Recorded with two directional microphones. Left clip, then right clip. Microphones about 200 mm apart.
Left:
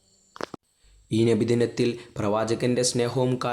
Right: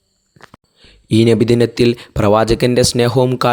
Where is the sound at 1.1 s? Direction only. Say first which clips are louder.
Right 10 dB; 40° right (ahead or behind).